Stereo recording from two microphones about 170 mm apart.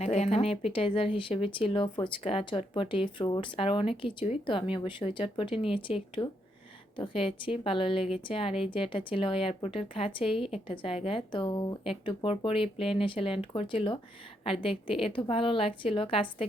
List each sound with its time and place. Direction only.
0.0 s speech: 40° left (ahead or behind)